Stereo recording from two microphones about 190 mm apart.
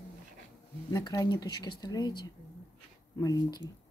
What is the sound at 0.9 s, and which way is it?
Speech, 20° left (ahead or behind).